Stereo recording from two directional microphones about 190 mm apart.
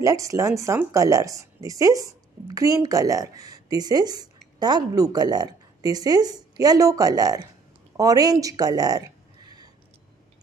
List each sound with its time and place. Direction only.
0.0 s a woman's voice: 15° right (ahead or behind)